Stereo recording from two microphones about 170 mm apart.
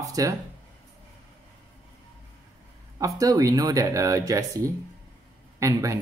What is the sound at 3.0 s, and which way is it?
Speech, 20° right (ahead or behind).